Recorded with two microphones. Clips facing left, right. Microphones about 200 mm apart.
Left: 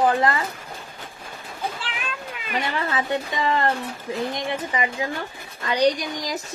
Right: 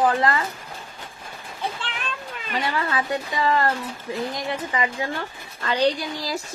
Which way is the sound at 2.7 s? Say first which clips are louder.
Even; 25° left (ahead or behind).